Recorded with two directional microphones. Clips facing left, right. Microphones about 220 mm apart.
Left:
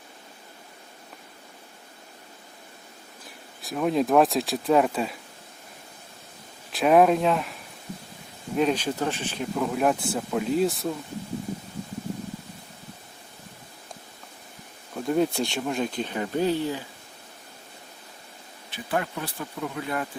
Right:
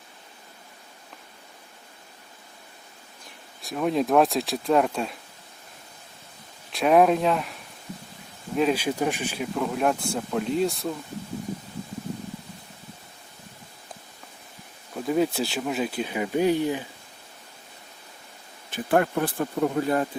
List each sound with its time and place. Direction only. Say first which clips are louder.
3.6 s speech: even; centre (ahead or behind)
6.7 s speech: even; centre (ahead or behind)
9.6 s speech: left 1 dB; centre (ahead or behind)
14.9 s speech: even; centre (ahead or behind)
18.7 s speech: right 7 dB; 50° right (ahead or behind)